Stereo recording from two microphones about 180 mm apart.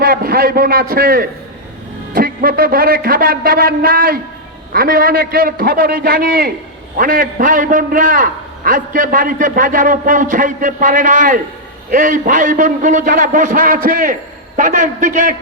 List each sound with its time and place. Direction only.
0.0 s a man's voice: 55° right (ahead or behind)